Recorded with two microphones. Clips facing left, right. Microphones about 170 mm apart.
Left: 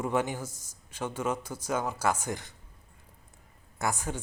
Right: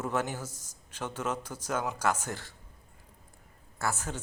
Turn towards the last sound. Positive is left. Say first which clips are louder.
# left 2 dB
turn(degrees=10)  # may be behind; listen again after turning